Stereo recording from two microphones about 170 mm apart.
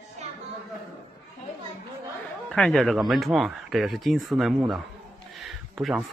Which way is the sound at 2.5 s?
Centre (ahead or behind).